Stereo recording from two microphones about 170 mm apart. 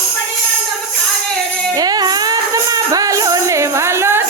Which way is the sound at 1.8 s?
20° right (ahead or behind).